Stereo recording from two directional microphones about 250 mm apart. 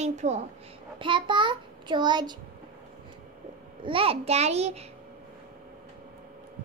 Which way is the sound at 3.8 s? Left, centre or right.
Right.